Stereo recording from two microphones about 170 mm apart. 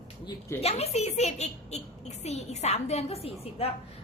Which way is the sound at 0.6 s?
40° left (ahead or behind).